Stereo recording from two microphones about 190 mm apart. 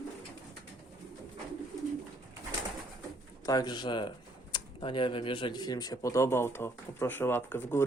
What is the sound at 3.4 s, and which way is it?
Speech, 20° left (ahead or behind).